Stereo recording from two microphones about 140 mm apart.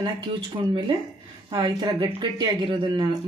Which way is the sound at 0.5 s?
30° right (ahead or behind).